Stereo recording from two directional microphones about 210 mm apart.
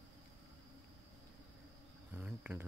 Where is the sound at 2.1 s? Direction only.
10° right (ahead or behind).